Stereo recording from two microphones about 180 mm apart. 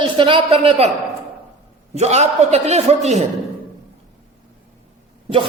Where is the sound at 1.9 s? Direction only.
35° right (ahead or behind).